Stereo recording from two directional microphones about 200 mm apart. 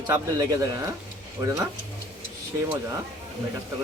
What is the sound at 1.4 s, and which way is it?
Speech, 20° right (ahead or behind).